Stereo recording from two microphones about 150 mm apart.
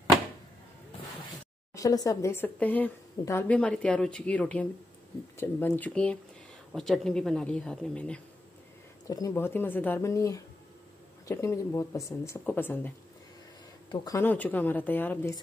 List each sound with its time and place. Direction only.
1.8 s a woman's voice: 25° left (ahead or behind); by 8.2 s 5° left (ahead or behind)
9.0 s a woman's voice: 20° left (ahead or behind)
13.8 s speech: 30° left (ahead or behind)
14.1 s a woman's voice: 10° left (ahead or behind)